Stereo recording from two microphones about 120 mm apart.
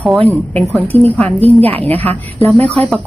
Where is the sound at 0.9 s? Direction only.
60° right (ahead or behind).